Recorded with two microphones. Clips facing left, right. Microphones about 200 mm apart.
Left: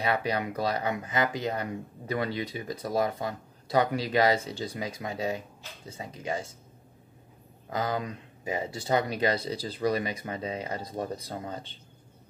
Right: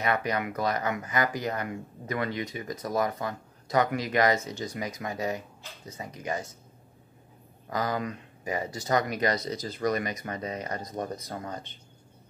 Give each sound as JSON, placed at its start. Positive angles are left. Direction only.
{"t": 0.0, "sound": "speech", "side_deg": 30}
{"t": 7.7, "sound": "speech", "side_deg": 25}